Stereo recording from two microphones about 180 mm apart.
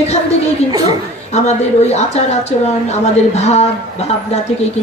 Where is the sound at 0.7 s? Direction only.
20° right (ahead or behind).